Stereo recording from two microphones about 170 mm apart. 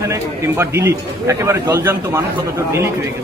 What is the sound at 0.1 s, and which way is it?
A man's voice, 15° right (ahead or behind).